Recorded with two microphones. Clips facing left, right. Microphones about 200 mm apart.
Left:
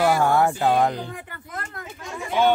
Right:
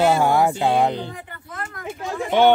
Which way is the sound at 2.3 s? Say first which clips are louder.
Right 5 dB; 65° right (ahead or behind).